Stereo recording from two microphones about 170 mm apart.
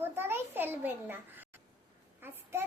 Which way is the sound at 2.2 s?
15° right (ahead or behind).